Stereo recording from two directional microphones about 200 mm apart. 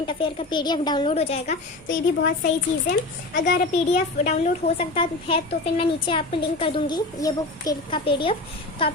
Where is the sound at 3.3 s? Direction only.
60° left (ahead or behind).